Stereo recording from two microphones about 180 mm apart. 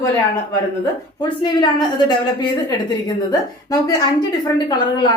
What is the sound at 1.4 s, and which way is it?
A woman's voice, 25° left (ahead or behind).